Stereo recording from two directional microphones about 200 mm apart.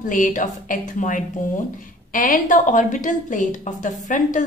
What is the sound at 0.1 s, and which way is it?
A woman's voice, 40° left (ahead or behind).